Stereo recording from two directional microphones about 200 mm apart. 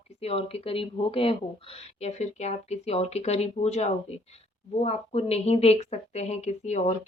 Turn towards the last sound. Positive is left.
turn(degrees=35)  # may be behind; listen again after turning